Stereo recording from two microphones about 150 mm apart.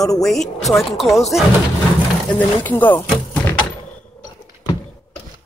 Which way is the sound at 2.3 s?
10° left (ahead or behind).